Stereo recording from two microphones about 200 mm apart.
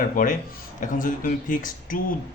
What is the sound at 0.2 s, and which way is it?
A man's voice, 45° left (ahead or behind).